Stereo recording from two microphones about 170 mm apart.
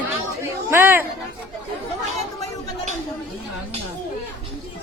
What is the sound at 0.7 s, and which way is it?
Speech, 15° right (ahead or behind).